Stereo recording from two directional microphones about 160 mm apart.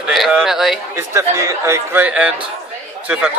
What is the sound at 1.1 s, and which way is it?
Speech, 20° right (ahead or behind).